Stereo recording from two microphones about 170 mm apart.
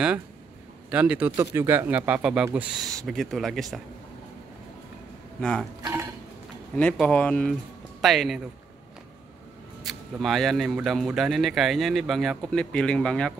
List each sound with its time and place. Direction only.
0.8 s a man's voice: 5° right (ahead or behind)
5.4 s speech: 5° left (ahead or behind)
5.8 s speech: 15° right (ahead or behind)
6.7 s speech: 5° left (ahead or behind)
9.8 s speech: centre (ahead or behind)